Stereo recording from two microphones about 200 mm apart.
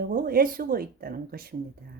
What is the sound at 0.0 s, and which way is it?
Speech, 45° right (ahead or behind).